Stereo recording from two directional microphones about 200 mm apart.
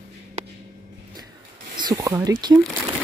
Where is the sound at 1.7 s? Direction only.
20° right (ahead or behind).